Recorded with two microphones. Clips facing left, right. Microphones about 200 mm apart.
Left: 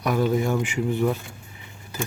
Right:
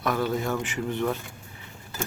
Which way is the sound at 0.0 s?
15° left (ahead or behind).